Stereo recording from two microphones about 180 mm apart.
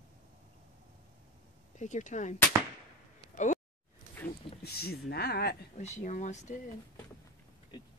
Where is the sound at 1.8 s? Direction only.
40° left (ahead or behind).